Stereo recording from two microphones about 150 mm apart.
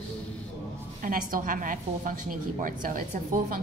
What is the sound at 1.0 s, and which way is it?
A woman's voice, 65° right (ahead or behind).